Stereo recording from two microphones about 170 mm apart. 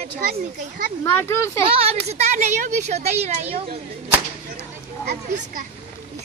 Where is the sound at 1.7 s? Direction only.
35° right (ahead or behind).